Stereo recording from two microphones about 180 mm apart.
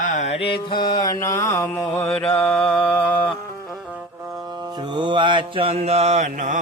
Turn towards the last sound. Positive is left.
turn(degrees=-45)  # may be behind; listen again after turning